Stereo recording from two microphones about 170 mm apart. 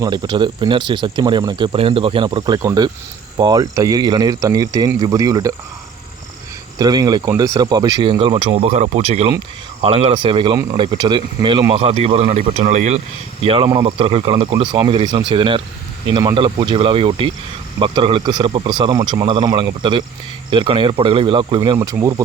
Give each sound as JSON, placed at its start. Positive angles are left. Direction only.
{"t": 0.0, "sound": "speech", "side_deg": -25}
{"t": 6.7, "sound": "speech", "side_deg": -25}
{"t": 21.8, "sound": "speech", "side_deg": -15}